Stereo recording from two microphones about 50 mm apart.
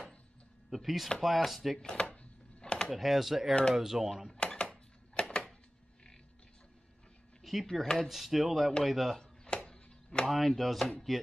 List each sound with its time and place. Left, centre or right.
0.7 s speech: centre
1.8 s speech: centre
2.6 s typing: centre
2.9 s speech: centre
4.4 s a sound: centre
7.4 s a sound: centre
8.1 s speech: centre
9.2 s chop: centre
10.3 s speech: centre
10.9 s chopping: centre